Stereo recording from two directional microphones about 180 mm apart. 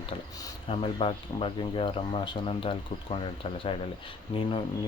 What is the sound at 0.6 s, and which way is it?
Speech, 30° left (ahead or behind).